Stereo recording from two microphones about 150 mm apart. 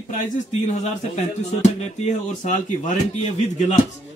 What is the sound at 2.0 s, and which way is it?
A man's voice, 55° left (ahead or behind).